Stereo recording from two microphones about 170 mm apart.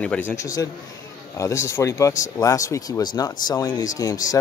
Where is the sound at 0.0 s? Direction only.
10° left (ahead or behind).